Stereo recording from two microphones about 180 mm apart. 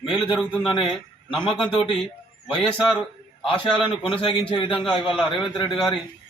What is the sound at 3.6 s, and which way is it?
A man's voice, 30° left (ahead or behind).